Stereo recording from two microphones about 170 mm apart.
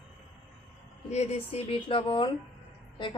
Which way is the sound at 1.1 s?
40° left (ahead or behind).